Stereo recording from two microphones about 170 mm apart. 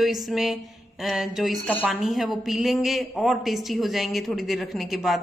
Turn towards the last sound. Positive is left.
turn(degrees=0)  # may be behind; listen again after turning